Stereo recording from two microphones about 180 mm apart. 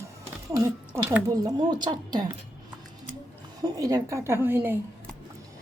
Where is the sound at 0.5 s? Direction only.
20° right (ahead or behind).